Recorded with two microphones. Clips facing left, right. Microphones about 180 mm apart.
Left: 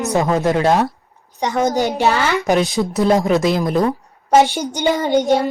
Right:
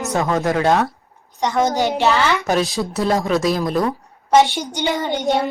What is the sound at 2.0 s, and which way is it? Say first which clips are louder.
Speech: even; 45° left (ahead or behind).